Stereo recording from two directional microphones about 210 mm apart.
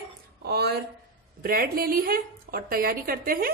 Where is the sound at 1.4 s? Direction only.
45° right (ahead or behind).